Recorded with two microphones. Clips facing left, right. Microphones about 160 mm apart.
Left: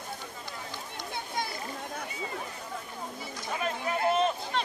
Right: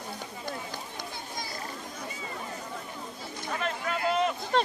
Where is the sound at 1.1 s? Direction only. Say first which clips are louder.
Left 4 dB; 60° left (ahead or behind).